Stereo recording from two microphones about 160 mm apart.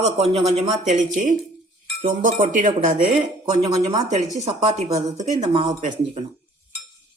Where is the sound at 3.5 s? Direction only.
40° right (ahead or behind).